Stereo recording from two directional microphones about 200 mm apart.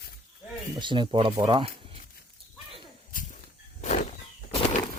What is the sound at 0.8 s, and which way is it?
Speech, 25° right (ahead or behind).